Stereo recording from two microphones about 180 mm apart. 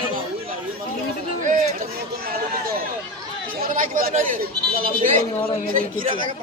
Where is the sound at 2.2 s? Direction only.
55° right (ahead or behind).